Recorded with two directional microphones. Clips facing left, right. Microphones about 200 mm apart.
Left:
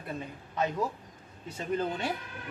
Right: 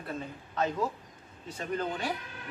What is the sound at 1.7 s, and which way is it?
Speech, 25° left (ahead or behind).